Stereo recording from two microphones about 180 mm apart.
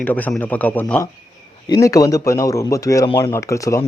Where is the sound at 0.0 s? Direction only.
10° left (ahead or behind).